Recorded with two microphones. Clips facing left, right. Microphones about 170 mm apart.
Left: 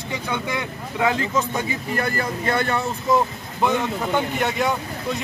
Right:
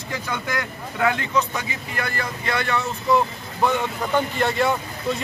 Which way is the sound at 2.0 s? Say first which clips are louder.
Left 2 dB; 35° left (ahead or behind).